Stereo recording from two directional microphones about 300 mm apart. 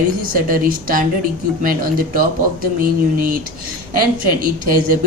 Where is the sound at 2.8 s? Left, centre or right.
Right.